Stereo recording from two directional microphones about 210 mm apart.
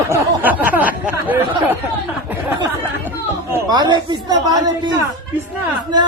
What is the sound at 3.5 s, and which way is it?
A woman's voice, 20° right (ahead or behind).